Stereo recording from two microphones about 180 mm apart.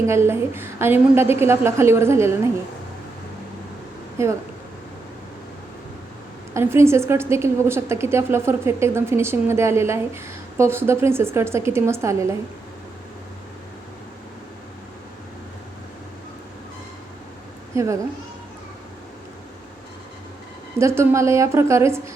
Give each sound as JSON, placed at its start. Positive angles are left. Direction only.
{"t": 0.0, "sound": "a woman's voice", "side_deg": -15}
{"t": 4.2, "sound": "a woman's voice", "side_deg": -15}
{"t": 6.5, "sound": "a woman's voice", "side_deg": -15}
{"t": 17.7, "sound": "a woman's voice", "side_deg": -15}
{"t": 20.7, "sound": "a woman's voice", "side_deg": -15}